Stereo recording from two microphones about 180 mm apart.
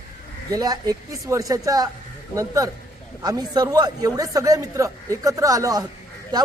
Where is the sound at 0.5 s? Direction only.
20° right (ahead or behind).